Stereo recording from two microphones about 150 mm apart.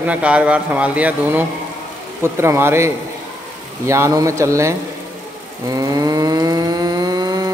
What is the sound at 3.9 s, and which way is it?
Speech, 20° right (ahead or behind).